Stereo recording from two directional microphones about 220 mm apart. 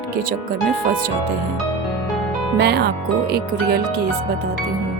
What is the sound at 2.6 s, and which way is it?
Speech, 50° right (ahead or behind).